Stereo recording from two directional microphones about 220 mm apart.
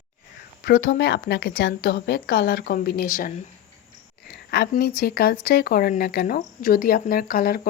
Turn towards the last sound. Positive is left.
turn(degrees=40)  # may be behind; listen again after turning